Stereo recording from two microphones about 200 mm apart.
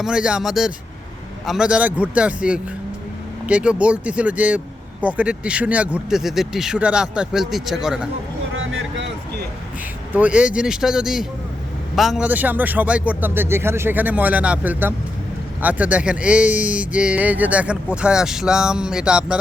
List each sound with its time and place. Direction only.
0.0 s speech: 5° right (ahead or behind)
8.5 s a sound: 75° right (ahead or behind)
10.1 s a man's voice: 5° right (ahead or behind)